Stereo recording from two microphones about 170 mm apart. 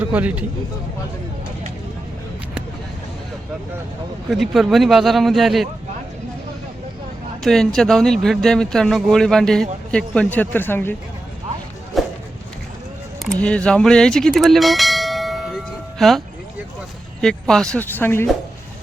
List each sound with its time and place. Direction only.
0.0 s a man's voice: 10° right (ahead or behind)
4.3 s speech: centre (ahead or behind)
7.4 s speech: centre (ahead or behind)
11.9 s a sound: centre (ahead or behind)
13.4 s bell: 5° left (ahead or behind)
17.2 s a woman's voice: 5° left (ahead or behind)